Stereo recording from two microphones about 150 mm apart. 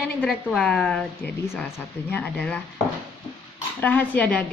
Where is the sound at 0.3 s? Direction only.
Centre (ahead or behind).